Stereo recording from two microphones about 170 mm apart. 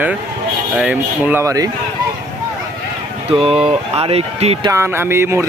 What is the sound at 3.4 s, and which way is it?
Speech, 35° right (ahead or behind).